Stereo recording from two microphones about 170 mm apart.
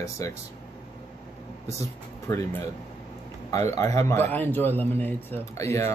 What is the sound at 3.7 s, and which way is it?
Speech, 15° left (ahead or behind).